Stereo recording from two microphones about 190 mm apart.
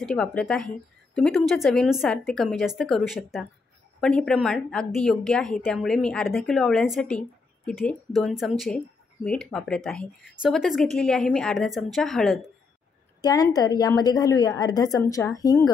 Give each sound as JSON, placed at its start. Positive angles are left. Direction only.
{"t": 0.0, "sound": "a woman's voice", "side_deg": 5}
{"t": 13.2, "sound": "a woman's voice", "side_deg": 20}